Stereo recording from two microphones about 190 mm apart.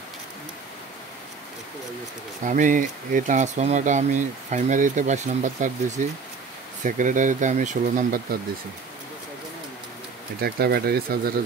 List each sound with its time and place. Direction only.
2.4 s speech: 45° right (ahead or behind)
10.4 s speech: 55° right (ahead or behind)